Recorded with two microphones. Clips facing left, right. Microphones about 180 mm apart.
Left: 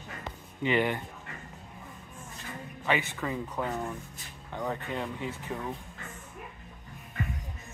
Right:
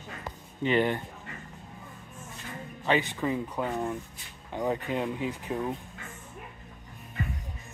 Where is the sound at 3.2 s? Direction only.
15° right (ahead or behind).